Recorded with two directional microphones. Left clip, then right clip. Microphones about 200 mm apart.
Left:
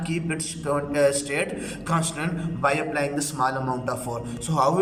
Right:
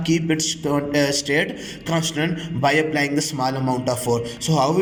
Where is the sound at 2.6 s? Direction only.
25° right (ahead or behind).